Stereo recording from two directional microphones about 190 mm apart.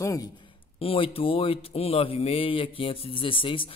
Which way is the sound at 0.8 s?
30° left (ahead or behind).